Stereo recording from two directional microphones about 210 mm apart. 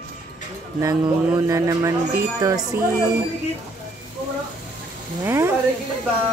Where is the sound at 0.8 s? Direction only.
15° right (ahead or behind).